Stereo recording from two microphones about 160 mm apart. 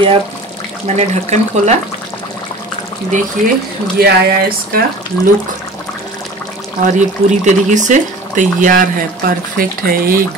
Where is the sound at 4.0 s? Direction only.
75° right (ahead or behind).